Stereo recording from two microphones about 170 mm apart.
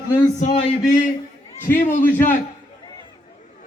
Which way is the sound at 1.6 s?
50° left (ahead or behind).